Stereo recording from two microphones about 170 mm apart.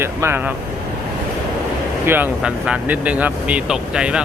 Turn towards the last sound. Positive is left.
turn(degrees=-5)  # may be behind; listen again after turning